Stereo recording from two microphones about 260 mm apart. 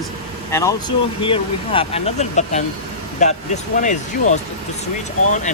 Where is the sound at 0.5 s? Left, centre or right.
Centre.